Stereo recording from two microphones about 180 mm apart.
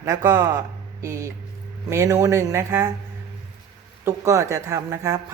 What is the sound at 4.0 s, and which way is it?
A man's voice, 15° right (ahead or behind).